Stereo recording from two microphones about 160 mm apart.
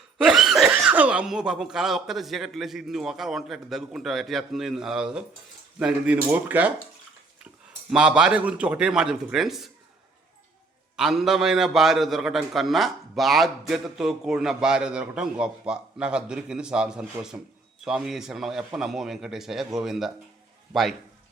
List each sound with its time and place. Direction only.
0.2 s a man's voice: centre (ahead or behind)
7.9 s a man's voice: 5° right (ahead or behind)
10.9 s a man's voice: 5° right (ahead or behind)